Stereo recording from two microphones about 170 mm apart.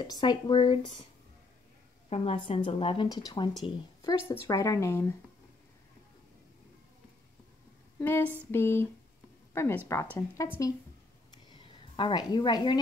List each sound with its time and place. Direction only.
0.0 s speech: 25° left (ahead or behind)
2.0 s a woman's voice: 35° left (ahead or behind); by 5.1 s 15° left (ahead or behind)
8.0 s a woman's voice: 10° left (ahead or behind)
12.0 s speech: 25° left (ahead or behind)